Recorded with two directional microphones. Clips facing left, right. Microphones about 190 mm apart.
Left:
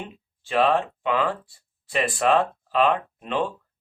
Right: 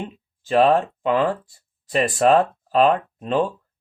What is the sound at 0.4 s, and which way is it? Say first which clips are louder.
Speech: right 5 dB; 45° right (ahead or behind).